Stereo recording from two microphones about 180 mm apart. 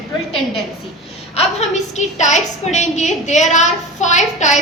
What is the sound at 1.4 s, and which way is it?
A woman's voice, 40° left (ahead or behind).